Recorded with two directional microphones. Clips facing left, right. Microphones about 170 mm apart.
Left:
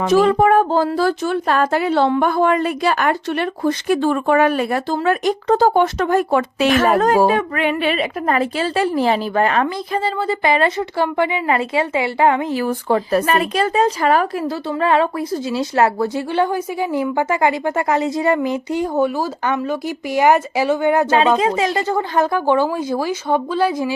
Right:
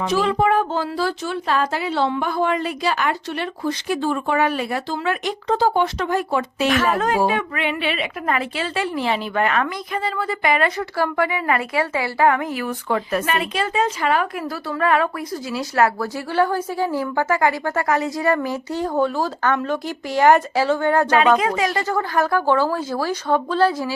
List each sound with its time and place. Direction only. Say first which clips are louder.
0.0 s a woman's voice: left 6 dB; 45° left (ahead or behind)
14.4 s a woman's voice: left 3 dB; 25° left (ahead or behind)
21.1 s a woman's voice: left 1 dB; 30° left (ahead or behind)